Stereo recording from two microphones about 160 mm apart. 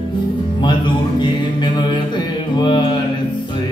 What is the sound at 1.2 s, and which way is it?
Mantra, 30° left (ahead or behind).